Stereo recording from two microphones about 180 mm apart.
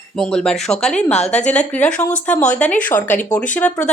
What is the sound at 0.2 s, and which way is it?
Speech, 5° left (ahead or behind).